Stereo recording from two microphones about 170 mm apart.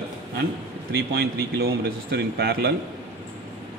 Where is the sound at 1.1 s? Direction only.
65° right (ahead or behind).